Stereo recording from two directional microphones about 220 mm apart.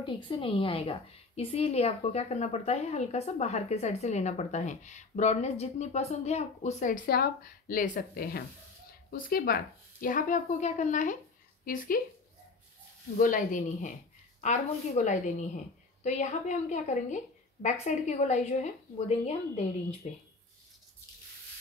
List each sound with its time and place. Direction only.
0.0 s a woman's voice: 25° left (ahead or behind); by 12.0 s 40° left (ahead or behind)
13.2 s a woman's voice: 40° left (ahead or behind)